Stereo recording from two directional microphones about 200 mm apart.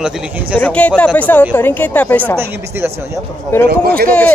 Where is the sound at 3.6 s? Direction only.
50° right (ahead or behind).